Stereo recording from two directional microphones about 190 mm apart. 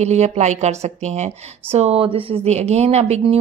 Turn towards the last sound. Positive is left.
turn(degrees=-35)  # may be behind; listen again after turning